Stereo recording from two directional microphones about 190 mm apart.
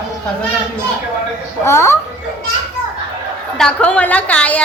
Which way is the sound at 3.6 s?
5° left (ahead or behind).